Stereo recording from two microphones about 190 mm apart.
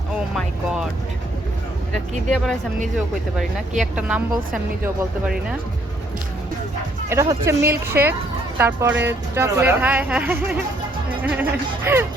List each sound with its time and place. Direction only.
0.3 s a woman's voice: 5° right (ahead or behind)
1.9 s a woman's voice: 5° left (ahead or behind)
7.1 s speech: 15° right (ahead or behind)